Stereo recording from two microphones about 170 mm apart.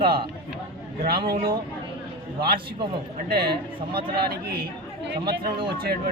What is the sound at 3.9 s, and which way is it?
Speech, 65° right (ahead or behind).